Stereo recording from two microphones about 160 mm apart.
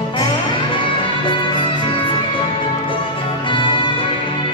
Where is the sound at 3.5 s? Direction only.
30° left (ahead or behind).